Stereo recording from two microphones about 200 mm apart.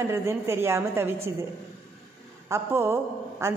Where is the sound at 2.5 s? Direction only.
10° right (ahead or behind).